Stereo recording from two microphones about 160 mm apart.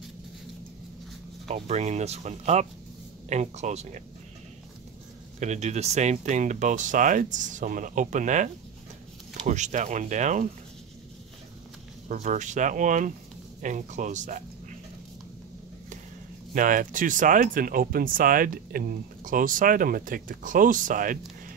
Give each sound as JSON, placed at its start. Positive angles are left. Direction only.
{"t": 1.5, "sound": "speech", "side_deg": -45}
{"t": 5.4, "sound": "speech", "side_deg": -45}
{"t": 9.5, "sound": "speech", "side_deg": -50}
{"t": 12.1, "sound": "speech", "side_deg": -50}
{"t": 16.5, "sound": "speech", "side_deg": -55}